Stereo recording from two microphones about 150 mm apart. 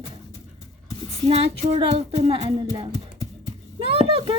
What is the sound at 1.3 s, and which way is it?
Speech, 45° right (ahead or behind).